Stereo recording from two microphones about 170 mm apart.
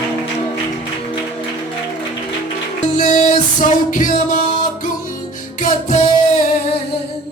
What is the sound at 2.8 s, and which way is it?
Music, 50° left (ahead or behind).